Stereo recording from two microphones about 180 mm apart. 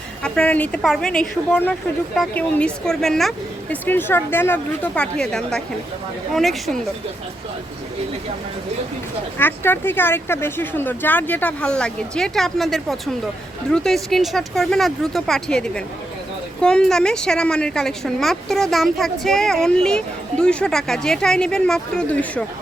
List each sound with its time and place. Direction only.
0.2 s a woman's voice: 5° left (ahead or behind)
9.4 s a woman's voice: 10° left (ahead or behind)